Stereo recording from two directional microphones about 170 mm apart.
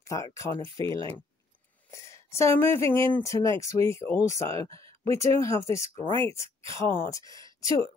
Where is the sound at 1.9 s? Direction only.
15° left (ahead or behind).